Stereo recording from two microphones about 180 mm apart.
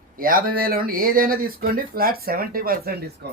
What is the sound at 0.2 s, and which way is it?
Speech, 50° right (ahead or behind).